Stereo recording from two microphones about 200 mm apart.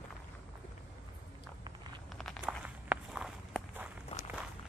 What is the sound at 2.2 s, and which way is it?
Walk, centre (ahead or behind).